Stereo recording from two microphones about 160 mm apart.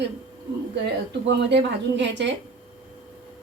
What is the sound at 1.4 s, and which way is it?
Speech, 90° right.